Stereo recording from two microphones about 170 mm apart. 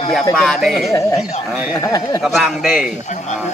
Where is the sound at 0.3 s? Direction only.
Centre (ahead or behind).